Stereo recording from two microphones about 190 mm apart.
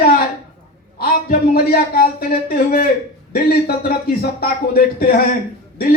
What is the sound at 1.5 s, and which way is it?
A man's voice, 55° left (ahead or behind).